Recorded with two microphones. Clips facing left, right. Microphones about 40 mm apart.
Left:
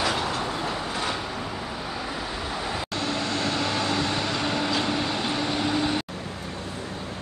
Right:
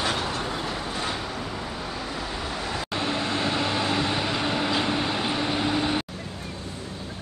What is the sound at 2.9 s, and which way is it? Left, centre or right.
Vehicle, centre.